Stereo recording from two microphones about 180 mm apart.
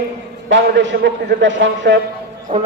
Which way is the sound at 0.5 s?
85° right.